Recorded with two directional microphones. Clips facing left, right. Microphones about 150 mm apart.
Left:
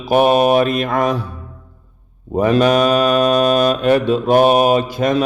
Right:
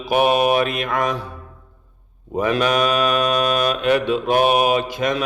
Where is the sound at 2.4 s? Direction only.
35° left (ahead or behind).